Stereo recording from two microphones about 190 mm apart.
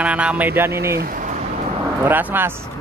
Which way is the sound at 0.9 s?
50° right (ahead or behind).